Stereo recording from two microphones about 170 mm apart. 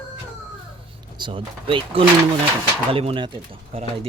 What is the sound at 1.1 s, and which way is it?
Speech, 30° right (ahead or behind).